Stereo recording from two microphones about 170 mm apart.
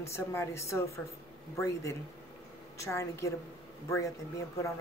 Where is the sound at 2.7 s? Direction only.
15° left (ahead or behind).